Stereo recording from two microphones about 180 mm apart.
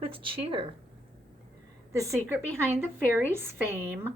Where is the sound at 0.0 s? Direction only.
30° right (ahead or behind).